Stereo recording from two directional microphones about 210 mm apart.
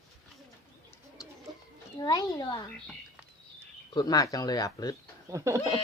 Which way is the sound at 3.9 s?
20° left (ahead or behind).